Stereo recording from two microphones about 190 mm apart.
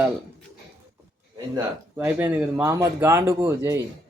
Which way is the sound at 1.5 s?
10° right (ahead or behind).